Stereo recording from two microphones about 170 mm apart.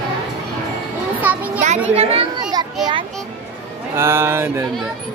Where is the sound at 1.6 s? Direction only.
40° right (ahead or behind).